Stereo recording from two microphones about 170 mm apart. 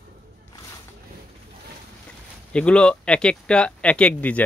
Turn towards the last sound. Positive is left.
turn(degrees=10)  # may be behind; listen again after turning